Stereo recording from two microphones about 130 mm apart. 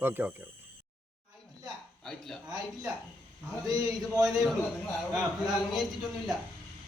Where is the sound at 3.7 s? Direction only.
25° right (ahead or behind).